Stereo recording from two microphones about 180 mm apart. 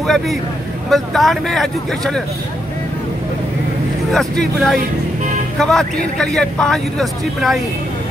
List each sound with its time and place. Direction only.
0.0 s a man's voice: centre (ahead or behind)
4.1 s a man's voice: centre (ahead or behind)